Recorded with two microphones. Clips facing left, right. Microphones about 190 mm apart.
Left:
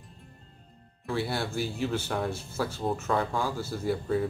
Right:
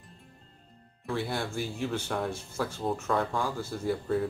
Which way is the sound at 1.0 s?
5° left (ahead or behind).